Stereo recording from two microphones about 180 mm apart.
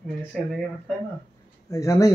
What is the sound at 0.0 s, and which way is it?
Speech, 5° left (ahead or behind).